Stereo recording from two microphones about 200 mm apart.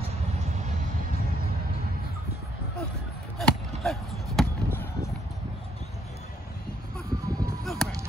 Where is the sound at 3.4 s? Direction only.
Centre (ahead or behind).